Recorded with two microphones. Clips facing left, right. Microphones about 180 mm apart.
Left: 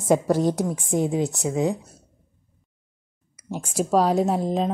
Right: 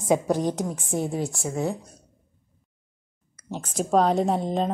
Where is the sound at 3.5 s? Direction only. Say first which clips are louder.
Left 1 dB; 10° left (ahead or behind).